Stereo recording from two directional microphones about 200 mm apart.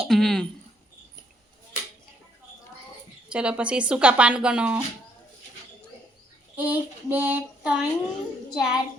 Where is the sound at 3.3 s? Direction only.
5° right (ahead or behind).